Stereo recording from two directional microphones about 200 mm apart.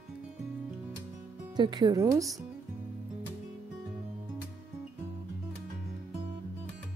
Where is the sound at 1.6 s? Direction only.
20° right (ahead or behind).